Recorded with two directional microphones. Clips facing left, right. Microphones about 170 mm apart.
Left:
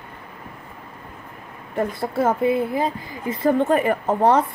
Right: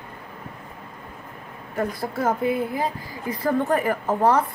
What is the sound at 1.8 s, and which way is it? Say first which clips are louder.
Speech: left 4 dB; 25° left (ahead or behind).